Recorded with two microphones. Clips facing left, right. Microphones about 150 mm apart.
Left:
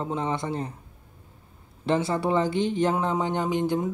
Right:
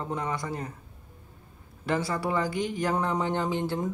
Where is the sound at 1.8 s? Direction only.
25° left (ahead or behind).